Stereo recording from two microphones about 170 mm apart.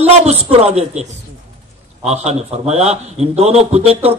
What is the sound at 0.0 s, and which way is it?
A man's voice, 40° right (ahead or behind).